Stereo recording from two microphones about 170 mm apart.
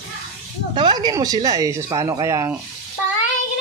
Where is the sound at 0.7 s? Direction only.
25° right (ahead or behind).